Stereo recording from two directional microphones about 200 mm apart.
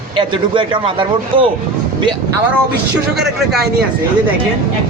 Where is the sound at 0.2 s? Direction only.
25° right (ahead or behind).